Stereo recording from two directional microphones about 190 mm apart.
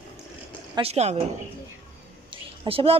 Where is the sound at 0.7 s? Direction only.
35° right (ahead or behind).